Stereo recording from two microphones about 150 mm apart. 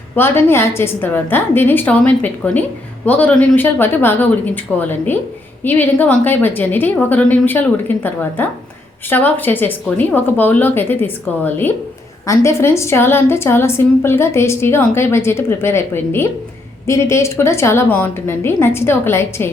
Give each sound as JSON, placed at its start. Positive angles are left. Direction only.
{"t": 0.2, "sound": "a woman's voice", "side_deg": 15}